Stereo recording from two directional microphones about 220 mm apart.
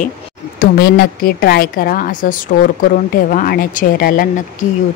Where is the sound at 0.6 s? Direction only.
45° left (ahead or behind).